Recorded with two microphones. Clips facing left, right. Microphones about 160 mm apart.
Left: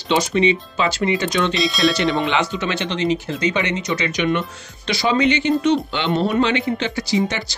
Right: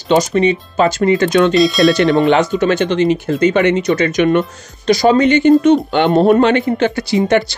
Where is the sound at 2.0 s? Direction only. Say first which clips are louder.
Right 8 dB; 50° right (ahead or behind).